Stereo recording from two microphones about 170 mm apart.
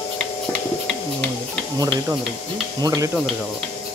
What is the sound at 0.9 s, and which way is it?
Bird, 5° left (ahead or behind).